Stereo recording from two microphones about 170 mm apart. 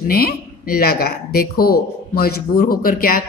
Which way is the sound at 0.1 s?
60° left (ahead or behind).